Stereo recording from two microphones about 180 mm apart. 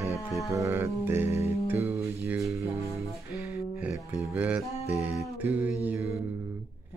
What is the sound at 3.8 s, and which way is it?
Music, 10° right (ahead or behind).